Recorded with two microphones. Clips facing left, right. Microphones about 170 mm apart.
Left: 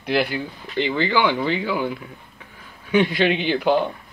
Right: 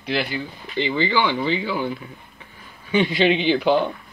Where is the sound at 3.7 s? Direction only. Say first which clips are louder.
Even; 50° left (ahead or behind).